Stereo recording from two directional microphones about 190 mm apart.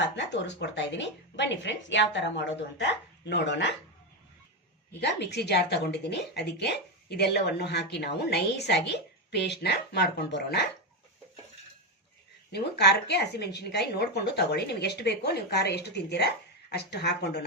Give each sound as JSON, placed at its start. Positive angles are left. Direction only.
{"t": 0.0, "sound": "a woman's voice", "side_deg": 65}
{"t": 4.9, "sound": "speech", "side_deg": 60}
{"t": 12.5, "sound": "speech", "side_deg": 60}